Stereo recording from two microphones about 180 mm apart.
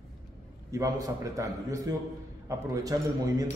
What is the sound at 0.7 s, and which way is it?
A man's voice, 20° right (ahead or behind).